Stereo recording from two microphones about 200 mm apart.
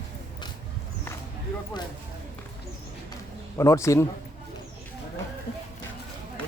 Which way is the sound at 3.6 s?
15° left (ahead or behind).